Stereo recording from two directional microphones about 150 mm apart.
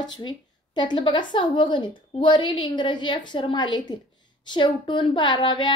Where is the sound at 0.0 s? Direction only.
30° left (ahead or behind).